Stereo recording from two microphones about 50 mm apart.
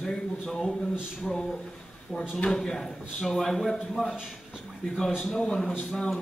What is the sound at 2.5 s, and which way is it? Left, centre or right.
A man's voice, centre.